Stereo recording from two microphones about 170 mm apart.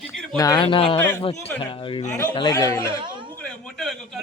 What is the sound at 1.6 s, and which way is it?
Speech, 30° left (ahead or behind).